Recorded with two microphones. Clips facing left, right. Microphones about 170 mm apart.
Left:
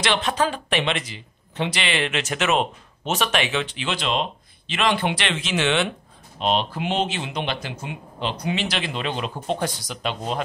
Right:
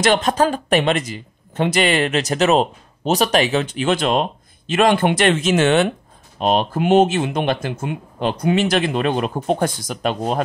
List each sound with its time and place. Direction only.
0.0 s speech: 45° right (ahead or behind)